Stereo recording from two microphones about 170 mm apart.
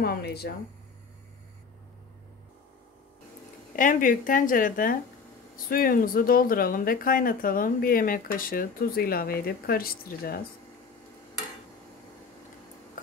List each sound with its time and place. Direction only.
0.0 s speech: 65° left (ahead or behind)
3.7 s a woman's voice: 50° left (ahead or behind)